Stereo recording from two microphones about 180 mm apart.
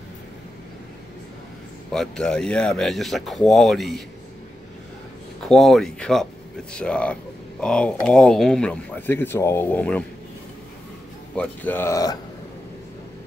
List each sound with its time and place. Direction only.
1.9 s speech: 5° left (ahead or behind)
5.5 s speech: centre (ahead or behind)
11.3 s speech: 10° left (ahead or behind)